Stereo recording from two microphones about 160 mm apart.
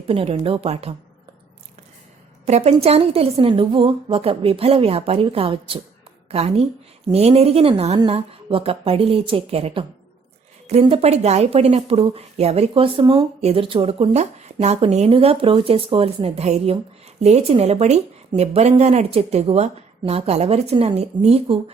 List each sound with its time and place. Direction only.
0.1 s speech: 35° right (ahead or behind)
2.5 s a woman's voice: 45° right (ahead or behind)